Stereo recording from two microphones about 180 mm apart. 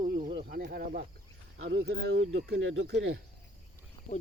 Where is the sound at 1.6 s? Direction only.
80° right.